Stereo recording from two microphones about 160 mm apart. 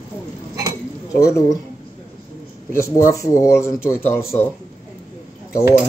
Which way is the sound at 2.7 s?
15° left (ahead or behind).